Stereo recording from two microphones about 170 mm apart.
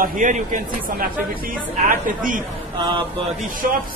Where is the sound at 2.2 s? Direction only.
50° right (ahead or behind).